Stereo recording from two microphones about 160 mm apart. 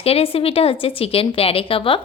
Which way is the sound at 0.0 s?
35° left (ahead or behind).